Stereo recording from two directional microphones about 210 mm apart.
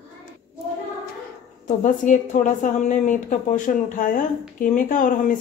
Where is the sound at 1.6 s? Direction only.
35° left (ahead or behind).